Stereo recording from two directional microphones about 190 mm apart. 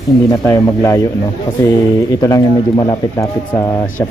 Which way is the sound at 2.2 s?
20° left (ahead or behind).